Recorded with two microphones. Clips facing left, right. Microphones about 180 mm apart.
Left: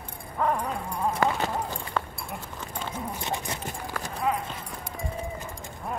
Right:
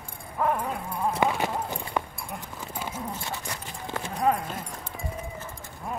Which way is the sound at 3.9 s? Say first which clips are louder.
Right 4 dB; 25° right (ahead or behind).